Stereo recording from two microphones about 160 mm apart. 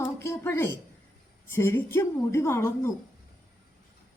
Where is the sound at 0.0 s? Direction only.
15° left (ahead or behind).